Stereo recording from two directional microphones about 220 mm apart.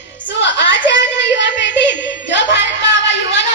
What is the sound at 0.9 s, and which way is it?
Child singing, 55° left (ahead or behind).